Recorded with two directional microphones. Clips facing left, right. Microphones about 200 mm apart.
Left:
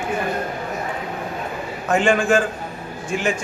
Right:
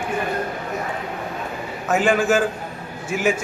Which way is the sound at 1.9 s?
5° right (ahead or behind).